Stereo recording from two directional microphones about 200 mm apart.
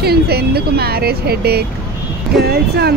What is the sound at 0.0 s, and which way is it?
Speech, 50° right (ahead or behind).